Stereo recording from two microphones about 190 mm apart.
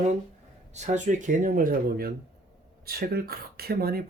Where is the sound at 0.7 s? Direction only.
40° right (ahead or behind).